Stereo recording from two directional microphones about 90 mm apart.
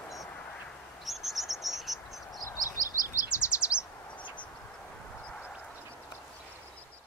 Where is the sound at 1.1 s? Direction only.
Centre (ahead or behind).